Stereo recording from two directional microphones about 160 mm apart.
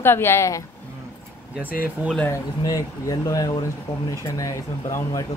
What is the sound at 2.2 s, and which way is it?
Speech, 20° left (ahead or behind).